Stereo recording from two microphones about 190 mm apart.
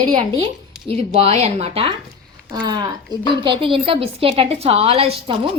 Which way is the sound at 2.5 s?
20° right (ahead or behind).